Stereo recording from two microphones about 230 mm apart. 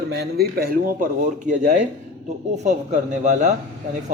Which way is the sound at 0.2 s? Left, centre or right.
Right.